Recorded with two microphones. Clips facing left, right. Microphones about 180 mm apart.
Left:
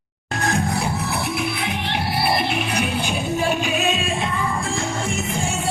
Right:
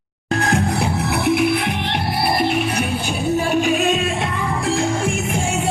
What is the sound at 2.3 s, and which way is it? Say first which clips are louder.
Music: right 3 dB; 45° right (ahead or behind).